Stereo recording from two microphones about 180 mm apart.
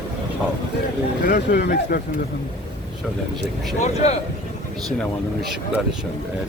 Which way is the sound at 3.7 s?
40° left (ahead or behind).